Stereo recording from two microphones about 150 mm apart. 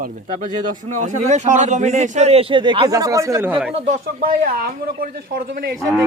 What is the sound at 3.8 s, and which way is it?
Speech, 60° right (ahead or behind).